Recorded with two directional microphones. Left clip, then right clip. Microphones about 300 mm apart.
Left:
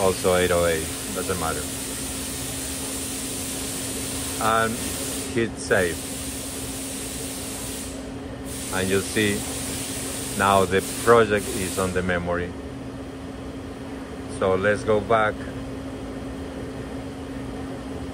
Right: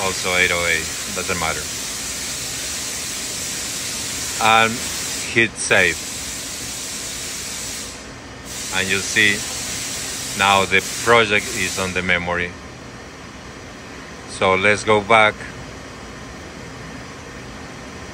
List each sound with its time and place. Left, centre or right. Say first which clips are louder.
0.0 s speech: right 2 dB; centre
4.4 s speech: right 7 dB; centre
8.7 s speech: right 5 dB; centre
10.4 s speech: right 4 dB; centre
14.4 s speech: right 5 dB; centre